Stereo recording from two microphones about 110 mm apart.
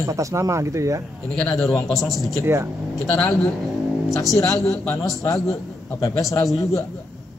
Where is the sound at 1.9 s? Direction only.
Centre (ahead or behind).